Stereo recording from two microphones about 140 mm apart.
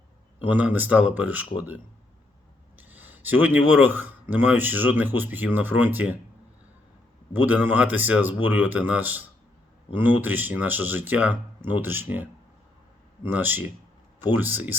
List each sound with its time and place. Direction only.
0.4 s speech: 10° right (ahead or behind)
7.4 s speech: 10° right (ahead or behind)